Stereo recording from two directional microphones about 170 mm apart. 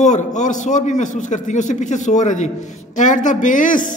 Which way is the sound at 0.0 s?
45° left (ahead or behind).